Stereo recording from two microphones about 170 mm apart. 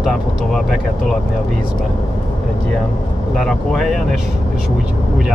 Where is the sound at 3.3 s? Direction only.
Centre (ahead or behind).